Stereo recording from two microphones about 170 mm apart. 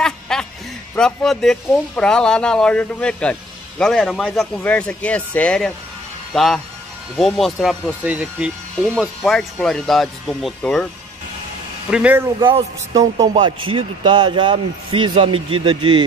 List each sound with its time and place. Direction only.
0.0 s a sound: 5° left (ahead or behind)
0.9 s speech: 5° left (ahead or behind)
11.9 s speech: 10° right (ahead or behind)
12.4 s speech: 25° right (ahead or behind)